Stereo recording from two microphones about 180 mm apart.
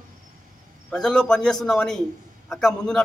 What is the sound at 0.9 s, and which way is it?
A man's voice, 5° left (ahead or behind).